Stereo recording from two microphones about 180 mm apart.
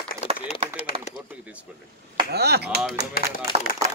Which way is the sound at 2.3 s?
65° right (ahead or behind).